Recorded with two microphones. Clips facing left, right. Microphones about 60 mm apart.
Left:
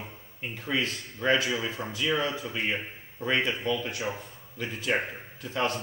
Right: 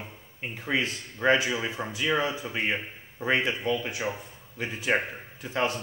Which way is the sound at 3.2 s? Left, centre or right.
Centre.